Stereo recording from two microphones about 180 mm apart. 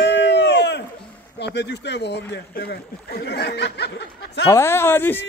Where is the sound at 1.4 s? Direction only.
70° left (ahead or behind).